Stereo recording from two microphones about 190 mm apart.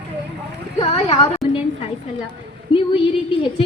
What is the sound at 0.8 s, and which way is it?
Speech, 30° left (ahead or behind).